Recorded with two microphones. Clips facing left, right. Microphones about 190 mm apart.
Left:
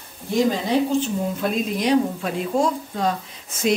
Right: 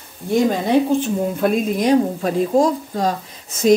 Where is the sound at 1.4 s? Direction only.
50° right (ahead or behind).